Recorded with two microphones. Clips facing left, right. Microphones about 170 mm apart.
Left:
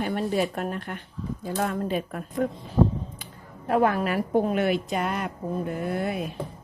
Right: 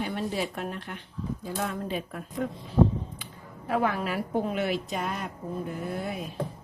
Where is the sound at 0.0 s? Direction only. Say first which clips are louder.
Left 5 dB; 50° left (ahead or behind).